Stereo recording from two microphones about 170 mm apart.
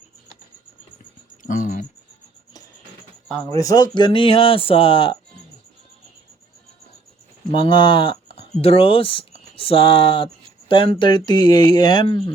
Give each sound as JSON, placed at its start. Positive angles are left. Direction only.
{"t": 1.5, "sound": "speech", "side_deg": 50}
{"t": 3.6, "sound": "speech", "side_deg": 20}
{"t": 7.5, "sound": "speech", "side_deg": 30}